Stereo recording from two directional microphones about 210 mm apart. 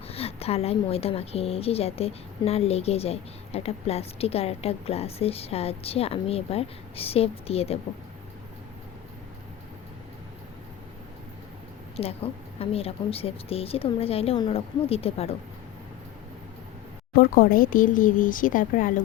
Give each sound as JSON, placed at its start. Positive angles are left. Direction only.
{"t": 0.1, "sound": "a woman's voice", "side_deg": 30}
{"t": 11.9, "sound": "a woman's voice", "side_deg": 30}
{"t": 17.2, "sound": "speech", "side_deg": 40}